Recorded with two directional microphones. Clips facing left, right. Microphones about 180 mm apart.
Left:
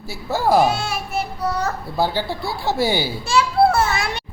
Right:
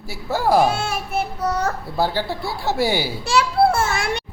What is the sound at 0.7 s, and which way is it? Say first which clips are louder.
Child singing: even; 50° right (ahead or behind).